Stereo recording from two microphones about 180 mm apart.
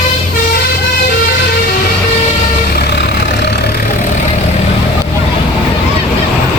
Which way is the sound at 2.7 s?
65° left (ahead or behind).